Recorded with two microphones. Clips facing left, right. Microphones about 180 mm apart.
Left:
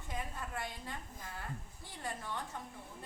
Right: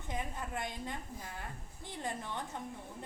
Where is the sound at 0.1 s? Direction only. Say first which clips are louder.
Right 3 dB; 20° right (ahead or behind).